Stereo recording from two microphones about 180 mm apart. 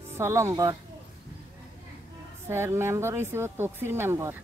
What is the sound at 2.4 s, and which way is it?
Speech, 15° right (ahead or behind).